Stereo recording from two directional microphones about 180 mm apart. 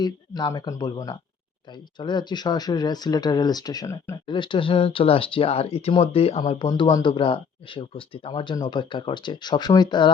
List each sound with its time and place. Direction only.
0.0 s speech: 25° left (ahead or behind)